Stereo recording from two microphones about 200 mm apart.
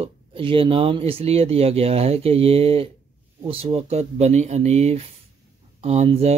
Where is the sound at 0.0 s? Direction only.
25° right (ahead or behind).